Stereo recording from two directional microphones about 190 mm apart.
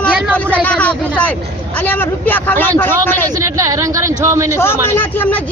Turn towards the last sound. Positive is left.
turn(degrees=10)  # may be behind; listen again after turning